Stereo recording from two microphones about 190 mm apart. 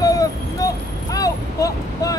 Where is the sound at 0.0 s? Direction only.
20° left (ahead or behind).